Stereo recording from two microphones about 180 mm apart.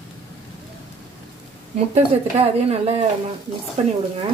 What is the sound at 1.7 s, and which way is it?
A woman's voice, 35° right (ahead or behind).